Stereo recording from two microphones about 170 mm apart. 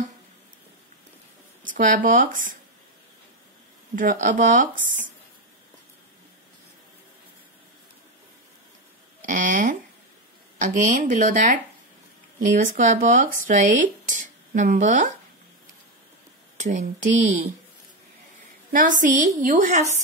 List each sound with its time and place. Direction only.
1.6 s speech: 50° right (ahead or behind)
3.9 s speech: 50° right (ahead or behind)
9.2 s speech: 50° right (ahead or behind)
12.5 s speech: 45° right (ahead or behind)
16.5 s speech: 45° right (ahead or behind)
18.7 s speech: 50° right (ahead or behind)